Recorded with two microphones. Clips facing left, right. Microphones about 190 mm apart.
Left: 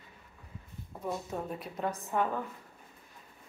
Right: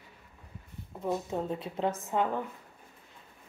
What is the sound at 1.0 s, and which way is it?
Speech, 20° right (ahead or behind).